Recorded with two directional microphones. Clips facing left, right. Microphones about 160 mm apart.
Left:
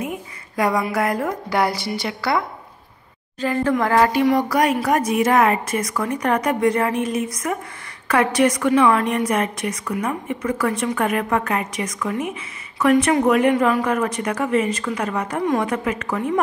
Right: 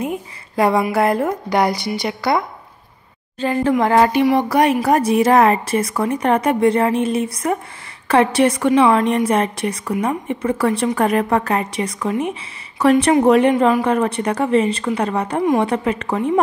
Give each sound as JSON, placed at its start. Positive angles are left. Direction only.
{"t": 0.6, "sound": "a woman's voice", "side_deg": -30}